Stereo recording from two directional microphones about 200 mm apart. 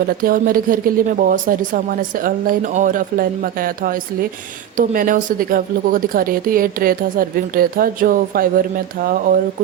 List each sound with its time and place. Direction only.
0.2 s speech: 45° right (ahead or behind)